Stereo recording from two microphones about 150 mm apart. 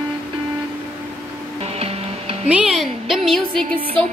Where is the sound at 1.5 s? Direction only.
40° right (ahead or behind).